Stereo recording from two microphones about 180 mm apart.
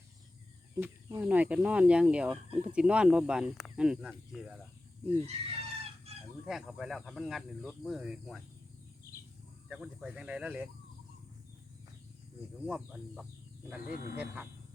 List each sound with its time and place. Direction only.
0.7 s speech: 15° right (ahead or behind); by 4.6 s centre (ahead or behind)
5.2 s chicken: 35° right (ahead or behind)
6.4 s speech: centre (ahead or behind)
9.6 s speech: centre (ahead or behind)
12.6 s speech: 5° right (ahead or behind)
13.9 s speech: 60° left (ahead or behind)